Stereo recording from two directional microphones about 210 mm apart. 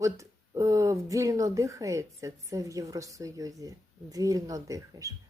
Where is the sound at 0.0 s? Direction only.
15° right (ahead or behind).